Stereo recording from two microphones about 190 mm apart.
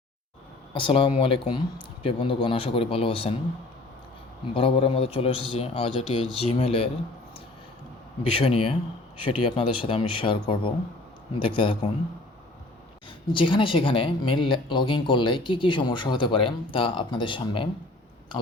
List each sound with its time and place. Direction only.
0.7 s speech: 25° left (ahead or behind)
4.5 s speech: 30° left (ahead or behind)
8.4 s speech: 30° left (ahead or behind)
13.3 s speech: 25° left (ahead or behind)